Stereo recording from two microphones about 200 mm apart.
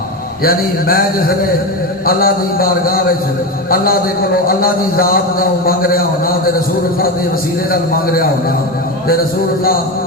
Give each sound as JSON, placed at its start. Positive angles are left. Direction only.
{"t": 0.4, "sound": "a man's voice", "side_deg": 50}
{"t": 7.7, "sound": "a man's voice", "side_deg": 50}